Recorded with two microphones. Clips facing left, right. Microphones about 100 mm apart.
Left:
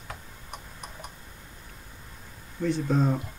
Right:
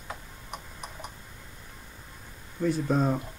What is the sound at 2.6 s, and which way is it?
Speech, 5° right (ahead or behind).